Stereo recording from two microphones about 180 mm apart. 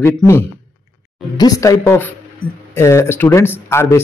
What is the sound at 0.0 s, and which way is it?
A man's voice, 15° left (ahead or behind).